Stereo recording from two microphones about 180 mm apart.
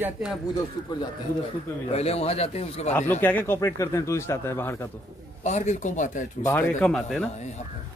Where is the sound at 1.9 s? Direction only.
35° left (ahead or behind).